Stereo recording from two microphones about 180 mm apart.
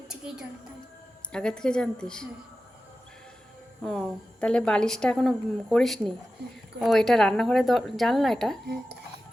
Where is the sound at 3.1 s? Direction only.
5° left (ahead or behind).